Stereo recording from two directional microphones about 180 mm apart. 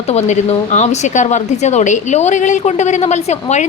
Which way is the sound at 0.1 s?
40° left (ahead or behind).